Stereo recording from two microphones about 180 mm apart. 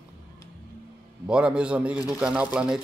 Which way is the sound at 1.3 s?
5° right (ahead or behind).